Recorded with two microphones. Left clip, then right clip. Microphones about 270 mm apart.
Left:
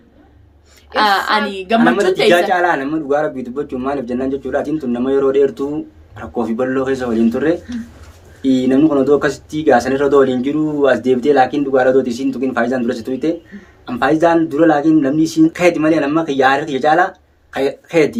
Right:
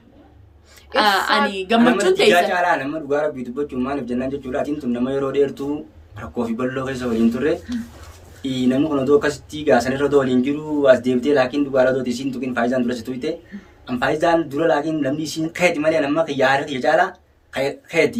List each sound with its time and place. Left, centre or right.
0.9 s a woman's voice: centre
2.5 s speech: centre
8.4 s speech: centre